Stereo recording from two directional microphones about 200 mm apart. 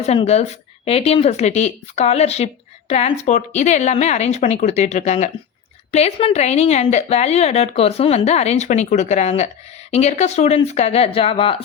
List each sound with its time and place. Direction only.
0.0 s speech: 30° left (ahead or behind)